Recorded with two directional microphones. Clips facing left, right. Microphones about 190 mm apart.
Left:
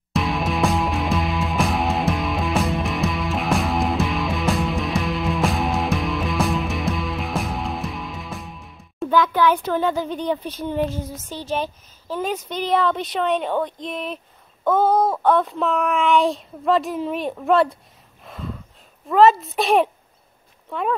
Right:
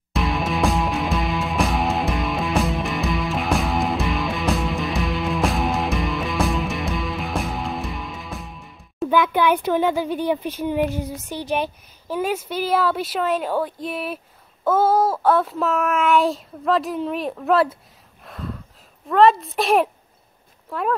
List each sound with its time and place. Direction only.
0.1 s music: centre (ahead or behind)
9.1 s speech: 15° right (ahead or behind)
18.2 s gasp: centre (ahead or behind)
19.0 s a child's voice: centre (ahead or behind)